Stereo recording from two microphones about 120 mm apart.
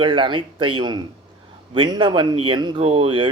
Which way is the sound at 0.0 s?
45° right (ahead or behind).